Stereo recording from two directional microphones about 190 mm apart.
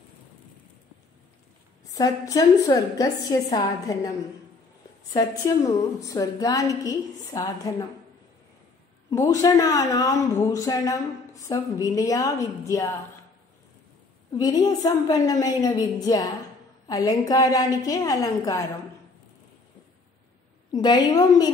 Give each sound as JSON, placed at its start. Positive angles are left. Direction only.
{"t": 1.9, "sound": "a woman's voice", "side_deg": 20}
{"t": 5.1, "sound": "a woman's voice", "side_deg": 20}
{"t": 9.1, "sound": "speech", "side_deg": 20}
{"t": 14.3, "sound": "a woman's voice", "side_deg": 20}
{"t": 20.7, "sound": "a woman's voice", "side_deg": 20}